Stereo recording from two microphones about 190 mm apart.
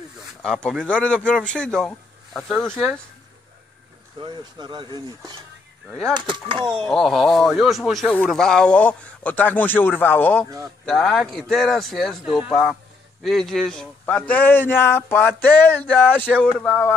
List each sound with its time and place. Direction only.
0.4 s speech: 5° left (ahead or behind)
4.2 s speech: 25° right (ahead or behind)
5.9 s speech: 5° left (ahead or behind)
6.1 s speech: 25° right (ahead or behind)
6.8 s speech: centre (ahead or behind)